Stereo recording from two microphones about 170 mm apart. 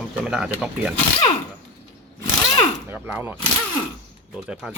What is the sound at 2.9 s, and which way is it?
Speech, 10° right (ahead or behind).